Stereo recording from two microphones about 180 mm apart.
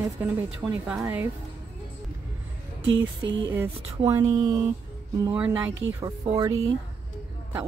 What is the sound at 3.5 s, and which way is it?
Speech, 15° right (ahead or behind).